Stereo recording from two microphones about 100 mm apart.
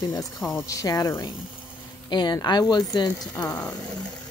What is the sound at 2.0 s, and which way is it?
Speech, 45° left (ahead or behind).